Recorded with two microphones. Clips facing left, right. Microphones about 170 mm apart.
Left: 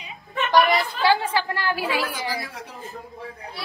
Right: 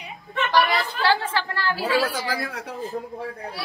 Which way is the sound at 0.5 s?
15° left (ahead or behind).